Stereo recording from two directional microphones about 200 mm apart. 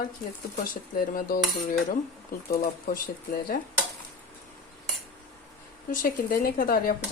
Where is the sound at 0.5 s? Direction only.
45° left (ahead or behind).